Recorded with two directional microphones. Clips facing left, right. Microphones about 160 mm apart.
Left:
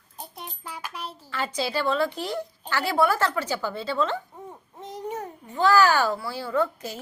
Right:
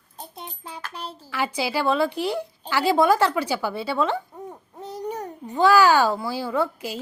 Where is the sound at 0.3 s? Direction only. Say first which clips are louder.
Right 1 dB; 25° right (ahead or behind).